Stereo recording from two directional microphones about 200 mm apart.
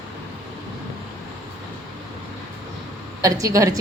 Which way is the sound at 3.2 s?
15° right (ahead or behind).